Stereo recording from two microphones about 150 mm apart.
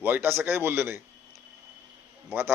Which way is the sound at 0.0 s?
15° right (ahead or behind).